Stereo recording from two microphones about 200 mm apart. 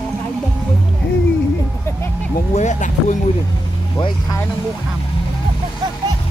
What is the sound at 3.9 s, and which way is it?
Speech, 20° left (ahead or behind).